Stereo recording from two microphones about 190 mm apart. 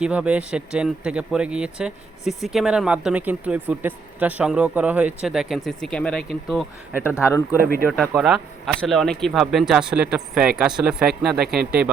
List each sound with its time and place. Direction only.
0.0 s speech: 5° right (ahead or behind)
7.2 s speech: 15° left (ahead or behind); by 11.4 s 5° right (ahead or behind)